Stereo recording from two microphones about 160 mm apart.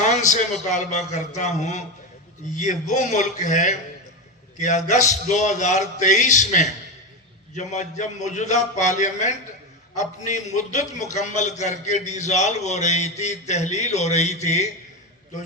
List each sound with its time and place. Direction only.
0.0 s speech: 50° left (ahead or behind)